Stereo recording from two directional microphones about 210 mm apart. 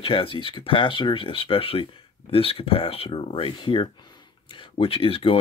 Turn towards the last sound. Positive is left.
turn(degrees=25)  # may be behind; listen again after turning